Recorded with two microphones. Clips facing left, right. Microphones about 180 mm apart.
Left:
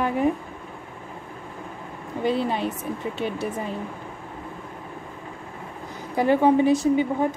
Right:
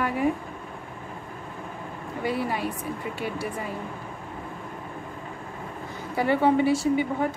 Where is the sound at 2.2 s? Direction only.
20° left (ahead or behind).